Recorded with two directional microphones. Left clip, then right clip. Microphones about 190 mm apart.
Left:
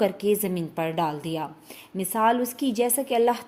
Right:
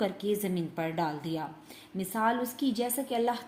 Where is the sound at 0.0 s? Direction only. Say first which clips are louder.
Left 7 dB; 40° left (ahead or behind).